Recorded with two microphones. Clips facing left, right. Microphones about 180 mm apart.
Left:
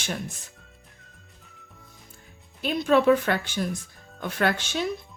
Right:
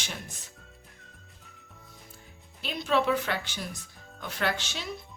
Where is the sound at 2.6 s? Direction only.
50° left (ahead or behind).